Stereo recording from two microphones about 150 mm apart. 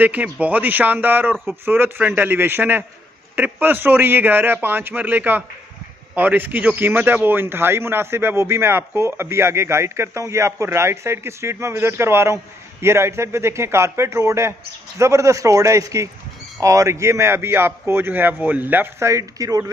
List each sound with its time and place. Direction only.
0.0 s a man's voice: 10° right (ahead or behind)